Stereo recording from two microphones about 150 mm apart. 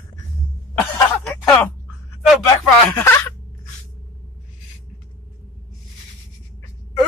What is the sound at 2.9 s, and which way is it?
Speech, 20° left (ahead or behind).